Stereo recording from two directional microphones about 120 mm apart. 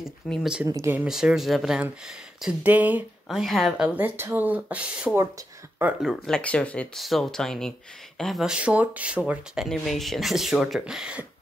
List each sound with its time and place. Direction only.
0.0 s speech: 5° right (ahead or behind)
0.7 s speech: 20° right (ahead or behind)
1.0 s speech: 5° right (ahead or behind)
3.3 s speech: centre (ahead or behind)
6.0 s speech: 5° left (ahead or behind)
7.0 s speech: centre (ahead or behind)